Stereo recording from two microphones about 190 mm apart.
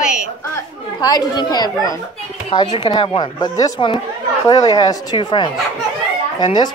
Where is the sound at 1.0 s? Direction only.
20° left (ahead or behind).